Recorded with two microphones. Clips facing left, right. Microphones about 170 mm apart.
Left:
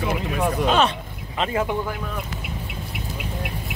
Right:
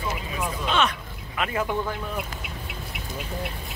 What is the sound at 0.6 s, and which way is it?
Speech, 40° left (ahead or behind).